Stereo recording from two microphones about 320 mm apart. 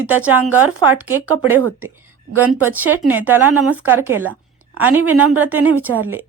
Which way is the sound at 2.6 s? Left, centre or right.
Centre.